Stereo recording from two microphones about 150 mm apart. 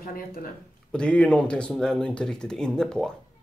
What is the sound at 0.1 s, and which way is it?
Speech, 75° left (ahead or behind).